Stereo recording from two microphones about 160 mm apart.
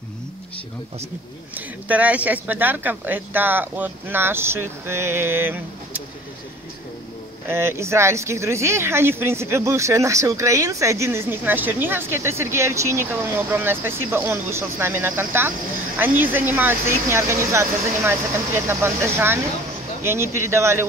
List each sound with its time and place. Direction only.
1.5 s speech: 10° right (ahead or behind)
7.4 s speech: 15° right (ahead or behind)